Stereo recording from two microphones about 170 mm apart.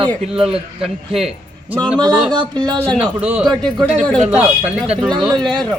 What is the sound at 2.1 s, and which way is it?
Speech, 5° right (ahead or behind).